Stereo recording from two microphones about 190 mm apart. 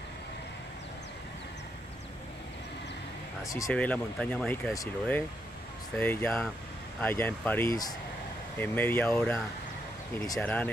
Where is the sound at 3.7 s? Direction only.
5° left (ahead or behind).